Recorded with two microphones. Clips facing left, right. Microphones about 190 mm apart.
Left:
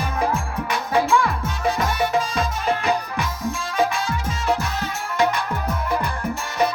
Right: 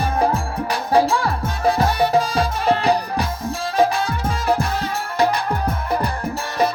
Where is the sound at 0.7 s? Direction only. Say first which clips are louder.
Right 3 dB; 35° right (ahead or behind).